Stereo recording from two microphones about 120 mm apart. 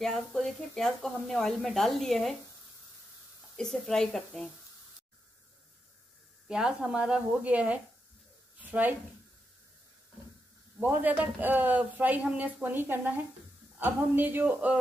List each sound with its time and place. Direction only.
0.0 s speech: 5° left (ahead or behind)
3.5 s speech: 5° left (ahead or behind)
6.4 s a man's voice: 5° right (ahead or behind)
8.5 s a sound: 15° right (ahead or behind)
10.8 s a man's voice: 15° right (ahead or behind)